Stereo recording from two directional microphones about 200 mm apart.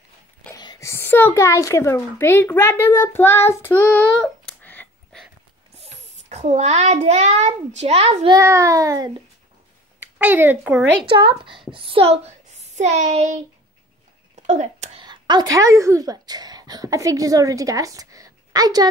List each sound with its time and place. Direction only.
0.6 s a child's voice: 20° left (ahead or behind)
5.8 s a child's voice: 35° right (ahead or behind)
8.4 s a child's voice: 15° right (ahead or behind)
11.1 s a woman's voice: 25° right (ahead or behind)
12.7 s a sound: 35° right (ahead or behind)
15.0 s speech: 20° right (ahead or behind)